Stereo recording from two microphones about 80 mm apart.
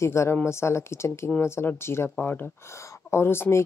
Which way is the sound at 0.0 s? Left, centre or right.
Left.